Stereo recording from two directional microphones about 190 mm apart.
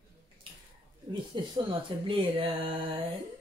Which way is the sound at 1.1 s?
25° right (ahead or behind).